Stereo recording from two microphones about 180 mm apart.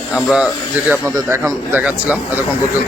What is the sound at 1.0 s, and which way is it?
A man's voice, 15° right (ahead or behind).